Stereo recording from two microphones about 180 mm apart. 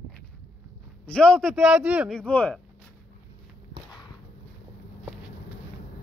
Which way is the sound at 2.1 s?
5° left (ahead or behind).